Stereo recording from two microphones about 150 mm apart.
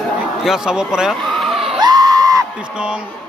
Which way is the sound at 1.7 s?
25° right (ahead or behind).